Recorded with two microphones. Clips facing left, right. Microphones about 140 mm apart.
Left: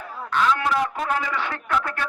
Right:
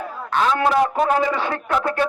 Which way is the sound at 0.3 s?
35° right (ahead or behind).